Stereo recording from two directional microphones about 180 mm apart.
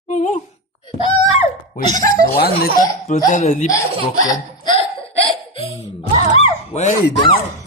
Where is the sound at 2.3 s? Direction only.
60° left (ahead or behind).